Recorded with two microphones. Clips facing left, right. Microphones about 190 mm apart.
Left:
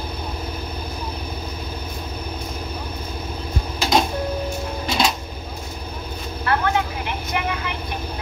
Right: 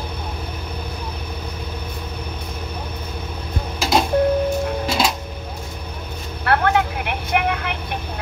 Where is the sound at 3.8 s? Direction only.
5° right (ahead or behind).